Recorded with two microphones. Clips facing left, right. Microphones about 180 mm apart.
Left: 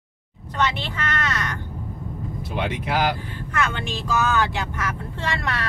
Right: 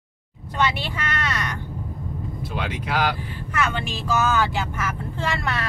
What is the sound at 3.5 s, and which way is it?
Speech, 10° right (ahead or behind).